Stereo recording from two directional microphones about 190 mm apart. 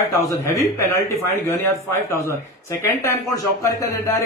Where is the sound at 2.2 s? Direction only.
15° left (ahead or behind).